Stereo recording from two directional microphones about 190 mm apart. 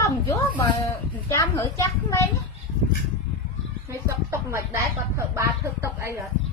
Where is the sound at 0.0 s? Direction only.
15° left (ahead or behind).